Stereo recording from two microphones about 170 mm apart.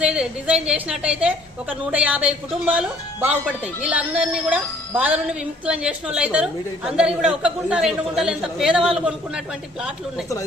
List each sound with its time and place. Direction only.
0.0 s speech: 5° right (ahead or behind)